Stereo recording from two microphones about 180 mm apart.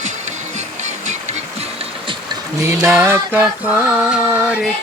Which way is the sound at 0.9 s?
40° right (ahead or behind).